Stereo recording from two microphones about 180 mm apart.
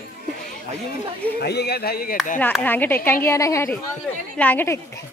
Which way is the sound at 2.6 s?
10° left (ahead or behind).